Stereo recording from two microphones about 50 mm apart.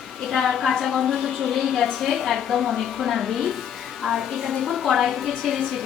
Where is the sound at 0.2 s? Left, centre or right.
Centre.